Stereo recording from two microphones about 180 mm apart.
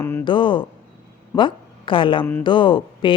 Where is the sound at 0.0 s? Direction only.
10° left (ahead or behind).